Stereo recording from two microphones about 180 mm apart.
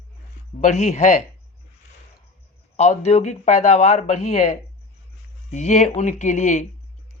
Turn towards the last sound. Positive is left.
turn(degrees=40)  # may be behind; listen again after turning